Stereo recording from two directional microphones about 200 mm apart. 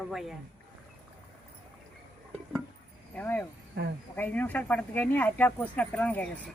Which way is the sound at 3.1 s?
10° left (ahead or behind).